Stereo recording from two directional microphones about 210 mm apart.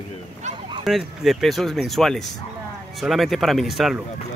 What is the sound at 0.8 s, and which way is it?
Speech, centre (ahead or behind).